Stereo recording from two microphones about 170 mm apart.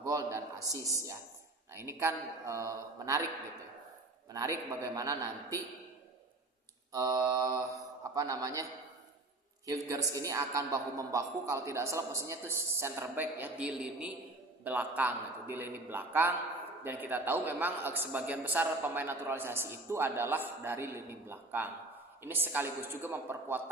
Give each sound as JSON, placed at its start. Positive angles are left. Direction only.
{"t": 0.0, "sound": "a man's voice", "side_deg": -20}
{"t": 4.3, "sound": "speech", "side_deg": -20}
{"t": 6.9, "sound": "speech", "side_deg": -20}
{"t": 9.6, "sound": "a man's voice", "side_deg": -20}